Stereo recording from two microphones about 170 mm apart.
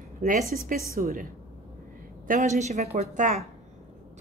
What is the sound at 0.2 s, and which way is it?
A woman's voice, 55° right (ahead or behind).